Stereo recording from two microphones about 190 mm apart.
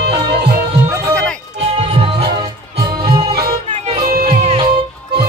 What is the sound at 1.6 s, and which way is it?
Music, 30° right (ahead or behind).